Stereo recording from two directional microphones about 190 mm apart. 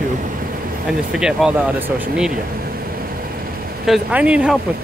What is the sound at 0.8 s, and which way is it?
Speech, 5° right (ahead or behind).